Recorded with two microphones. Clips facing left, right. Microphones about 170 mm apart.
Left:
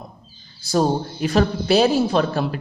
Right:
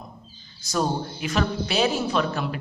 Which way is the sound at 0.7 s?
35° left (ahead or behind).